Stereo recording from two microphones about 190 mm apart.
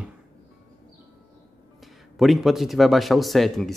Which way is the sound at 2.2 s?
Centre (ahead or behind).